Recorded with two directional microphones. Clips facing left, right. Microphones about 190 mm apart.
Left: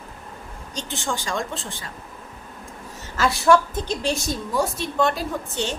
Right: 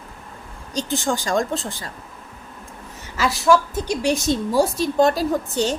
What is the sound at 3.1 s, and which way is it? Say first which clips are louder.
Speech: even; centre (ahead or behind).